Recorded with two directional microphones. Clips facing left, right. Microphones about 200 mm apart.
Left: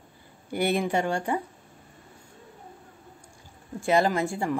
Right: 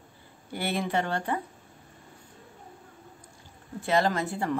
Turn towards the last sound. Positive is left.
turn(degrees=10)  # may be behind; listen again after turning